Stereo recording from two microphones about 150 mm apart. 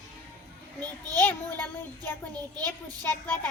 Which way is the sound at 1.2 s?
10° left (ahead or behind).